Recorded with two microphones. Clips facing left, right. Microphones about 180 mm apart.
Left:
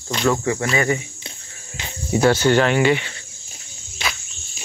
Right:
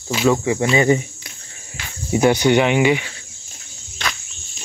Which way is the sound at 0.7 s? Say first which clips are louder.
Right 7 dB; 25° right (ahead or behind).